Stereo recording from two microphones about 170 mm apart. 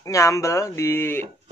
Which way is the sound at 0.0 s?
20° left (ahead or behind).